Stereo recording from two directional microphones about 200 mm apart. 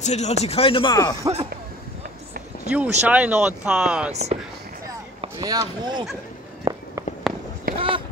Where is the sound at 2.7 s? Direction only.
5° right (ahead or behind).